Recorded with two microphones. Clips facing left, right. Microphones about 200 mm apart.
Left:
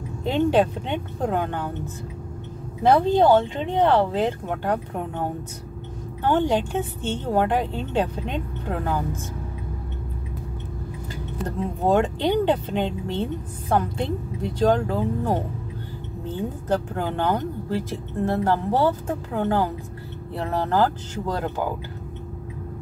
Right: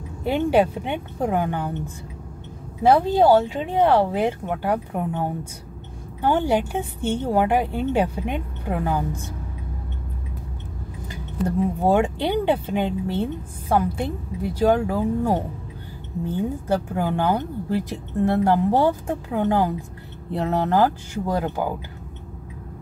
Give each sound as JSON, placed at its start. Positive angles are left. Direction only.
{"t": 0.2, "sound": "speech", "side_deg": -10}
{"t": 2.8, "sound": "speech", "side_deg": -10}
{"t": 6.2, "sound": "speech", "side_deg": -10}
{"t": 11.4, "sound": "speech", "side_deg": -10}